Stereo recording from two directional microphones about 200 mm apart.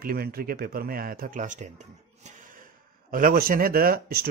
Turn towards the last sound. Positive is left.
turn(degrees=-45)  # may be behind; listen again after turning